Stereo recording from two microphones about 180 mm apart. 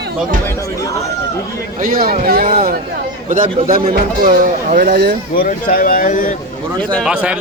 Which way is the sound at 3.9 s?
50° right (ahead or behind).